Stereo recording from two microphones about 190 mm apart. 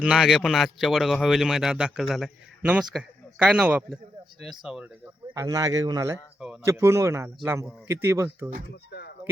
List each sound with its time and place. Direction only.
0.0 s a man's voice: 5° right (ahead or behind)
5.3 s speech: 20° right (ahead or behind)
8.7 s speech: 60° left (ahead or behind)